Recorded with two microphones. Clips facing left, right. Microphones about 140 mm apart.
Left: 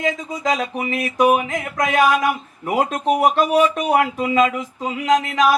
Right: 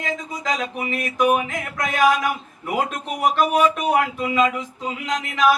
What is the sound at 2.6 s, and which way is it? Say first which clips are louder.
Speech: left 6 dB; 40° left (ahead or behind).